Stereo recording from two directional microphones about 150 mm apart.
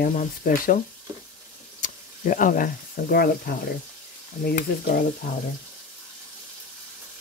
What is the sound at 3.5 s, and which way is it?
Speech, 90° left.